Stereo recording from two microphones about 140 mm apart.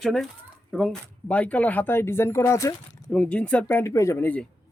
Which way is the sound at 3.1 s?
10° left (ahead or behind).